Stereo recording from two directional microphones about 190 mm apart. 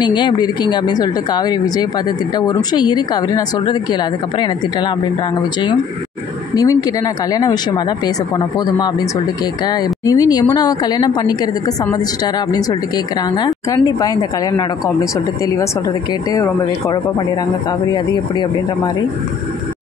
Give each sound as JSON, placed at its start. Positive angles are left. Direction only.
{"t": 0.0, "sound": "speech", "side_deg": 25}
{"t": 6.5, "sound": "speech", "side_deg": 20}
{"t": 10.0, "sound": "speech", "side_deg": 20}